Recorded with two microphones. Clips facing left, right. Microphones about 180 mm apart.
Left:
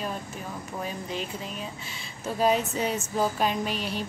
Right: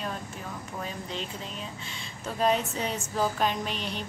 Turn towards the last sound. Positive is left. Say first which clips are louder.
# left 3 dB
turn(degrees=5)  # may be behind; listen again after turning